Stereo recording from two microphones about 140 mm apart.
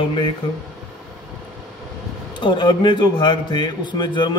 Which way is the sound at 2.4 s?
35° left (ahead or behind).